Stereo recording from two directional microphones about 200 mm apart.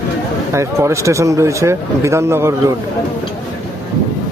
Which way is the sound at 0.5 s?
15° right (ahead or behind).